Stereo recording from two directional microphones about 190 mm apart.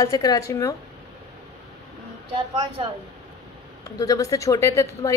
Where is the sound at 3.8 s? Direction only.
20° left (ahead or behind).